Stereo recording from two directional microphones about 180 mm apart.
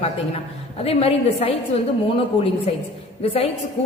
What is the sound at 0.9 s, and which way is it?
Speech, 35° left (ahead or behind).